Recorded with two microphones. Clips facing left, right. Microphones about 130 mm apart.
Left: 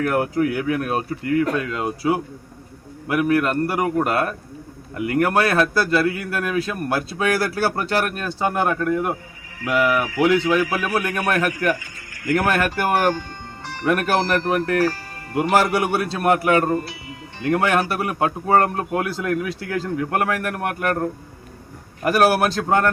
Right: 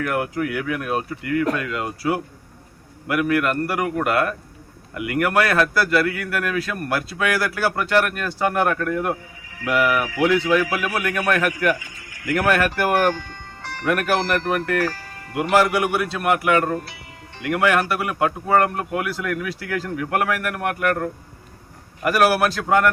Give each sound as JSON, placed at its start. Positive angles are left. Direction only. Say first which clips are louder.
{"t": 0.0, "sound": "a man's voice", "louder": "left 3 dB", "side_deg": 35}
{"t": 13.8, "sound": "a man's voice", "louder": "left 1 dB", "side_deg": 30}